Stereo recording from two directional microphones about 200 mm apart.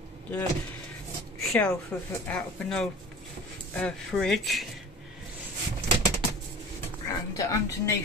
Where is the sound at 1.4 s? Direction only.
Centre (ahead or behind).